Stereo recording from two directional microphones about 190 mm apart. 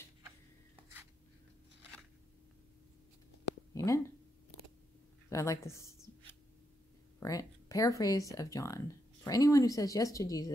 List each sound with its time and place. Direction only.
3.7 s speech: 15° left (ahead or behind)
5.3 s speech: 15° left (ahead or behind)
7.2 s speech: 20° left (ahead or behind)